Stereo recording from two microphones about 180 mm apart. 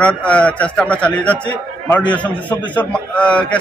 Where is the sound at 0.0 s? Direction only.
5° left (ahead or behind).